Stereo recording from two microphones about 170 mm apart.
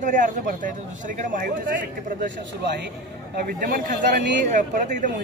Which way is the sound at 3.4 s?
60° right (ahead or behind).